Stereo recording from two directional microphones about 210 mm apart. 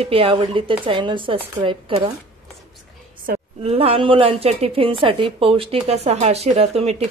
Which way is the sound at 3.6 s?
30° right (ahead or behind).